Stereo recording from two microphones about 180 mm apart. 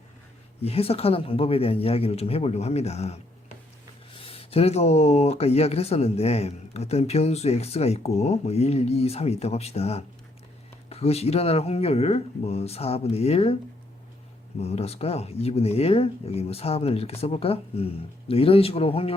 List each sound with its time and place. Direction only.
0.6 s speech: 35° left (ahead or behind)
14.6 s speech: 35° left (ahead or behind)